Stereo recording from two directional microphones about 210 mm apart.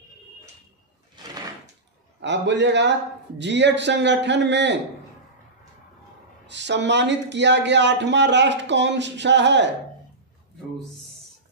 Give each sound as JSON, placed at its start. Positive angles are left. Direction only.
{"t": 1.2, "sound": "door", "side_deg": -20}
{"t": 2.1, "sound": "speech", "side_deg": -55}
{"t": 6.4, "sound": "speech", "side_deg": -55}